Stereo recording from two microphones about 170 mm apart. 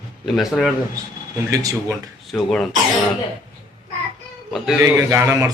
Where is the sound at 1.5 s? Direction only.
15° right (ahead or behind).